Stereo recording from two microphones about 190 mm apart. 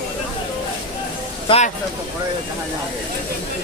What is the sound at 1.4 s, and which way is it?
Speech, 35° left (ahead or behind).